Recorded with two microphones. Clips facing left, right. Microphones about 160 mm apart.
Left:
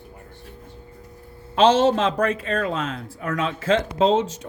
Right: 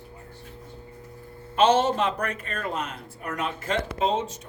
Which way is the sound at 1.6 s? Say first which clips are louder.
Left 4 dB; 90° left.